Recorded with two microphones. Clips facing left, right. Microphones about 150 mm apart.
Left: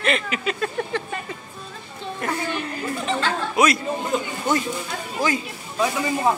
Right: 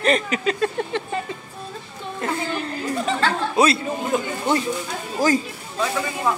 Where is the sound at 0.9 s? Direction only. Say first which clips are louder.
Right 1 dB; 25° right (ahead or behind).